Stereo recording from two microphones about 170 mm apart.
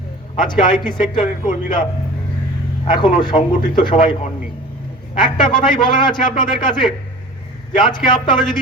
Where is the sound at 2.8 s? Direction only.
25° left (ahead or behind).